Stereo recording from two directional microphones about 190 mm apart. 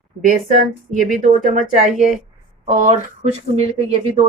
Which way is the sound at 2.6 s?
40° right (ahead or behind).